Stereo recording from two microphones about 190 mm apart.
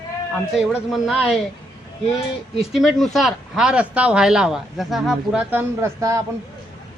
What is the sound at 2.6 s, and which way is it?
A woman's voice, centre (ahead or behind).